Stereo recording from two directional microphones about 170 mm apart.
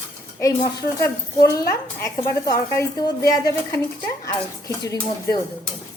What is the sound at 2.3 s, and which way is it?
A woman's voice, 20° left (ahead or behind).